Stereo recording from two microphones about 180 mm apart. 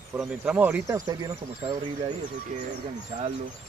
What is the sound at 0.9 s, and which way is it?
Speech, 20° right (ahead or behind).